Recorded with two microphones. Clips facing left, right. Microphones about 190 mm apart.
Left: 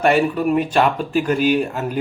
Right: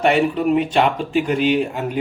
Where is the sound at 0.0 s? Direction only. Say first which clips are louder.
Even; 20° right (ahead or behind).